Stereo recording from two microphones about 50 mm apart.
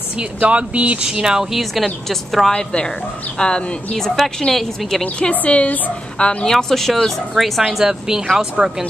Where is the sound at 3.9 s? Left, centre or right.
Centre.